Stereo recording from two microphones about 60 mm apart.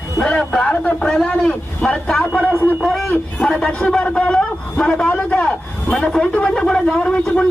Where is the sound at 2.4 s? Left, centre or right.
Left.